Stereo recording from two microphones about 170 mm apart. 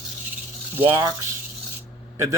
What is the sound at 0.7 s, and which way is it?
Speech, 10° right (ahead or behind).